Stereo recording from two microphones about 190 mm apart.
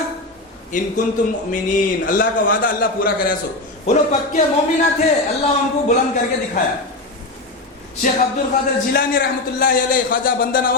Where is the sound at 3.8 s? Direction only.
40° left (ahead or behind).